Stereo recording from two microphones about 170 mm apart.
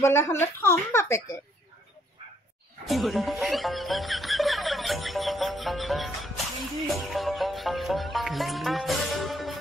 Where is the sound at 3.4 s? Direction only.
Centre (ahead or behind).